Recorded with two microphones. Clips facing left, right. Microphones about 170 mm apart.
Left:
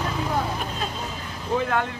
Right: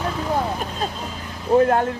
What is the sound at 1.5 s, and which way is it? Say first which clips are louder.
Speech: right 8 dB; 40° right (ahead or behind).